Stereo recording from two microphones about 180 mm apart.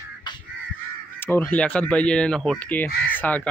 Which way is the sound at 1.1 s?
10° left (ahead or behind).